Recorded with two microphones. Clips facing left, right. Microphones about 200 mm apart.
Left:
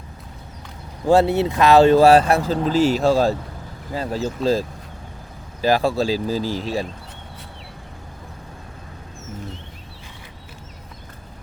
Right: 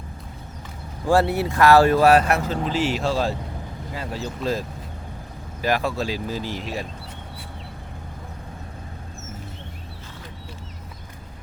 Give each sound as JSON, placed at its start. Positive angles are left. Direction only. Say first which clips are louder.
{"t": 1.0, "sound": "speech", "louder": "left 4 dB", "side_deg": 20}
{"t": 5.6, "sound": "speech", "louder": "left 5 dB", "side_deg": 30}